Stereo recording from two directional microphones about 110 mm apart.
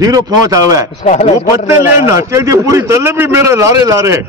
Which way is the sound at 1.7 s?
25° right (ahead or behind).